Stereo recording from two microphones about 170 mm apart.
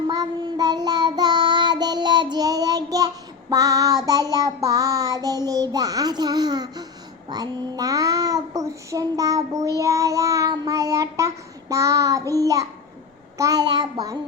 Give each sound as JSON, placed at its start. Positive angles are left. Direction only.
{"t": 0.1, "sound": "child singing", "side_deg": -25}